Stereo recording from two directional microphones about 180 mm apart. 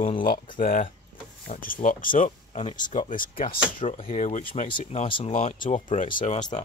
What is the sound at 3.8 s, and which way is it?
Speech, 35° left (ahead or behind).